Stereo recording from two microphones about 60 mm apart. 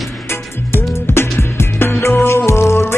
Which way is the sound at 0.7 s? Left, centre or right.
Left.